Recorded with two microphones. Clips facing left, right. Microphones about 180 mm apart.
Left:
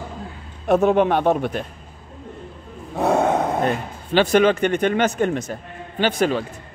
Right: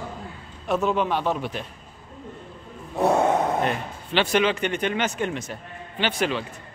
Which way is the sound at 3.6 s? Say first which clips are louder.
Left 4 dB; 45° left (ahead or behind).